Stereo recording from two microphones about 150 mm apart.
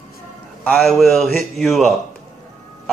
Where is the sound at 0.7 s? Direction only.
Centre (ahead or behind).